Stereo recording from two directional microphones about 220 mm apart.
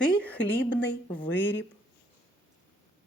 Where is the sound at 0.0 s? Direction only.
5° left (ahead or behind).